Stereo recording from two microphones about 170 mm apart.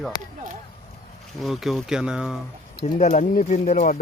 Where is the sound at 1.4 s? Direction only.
Centre (ahead or behind).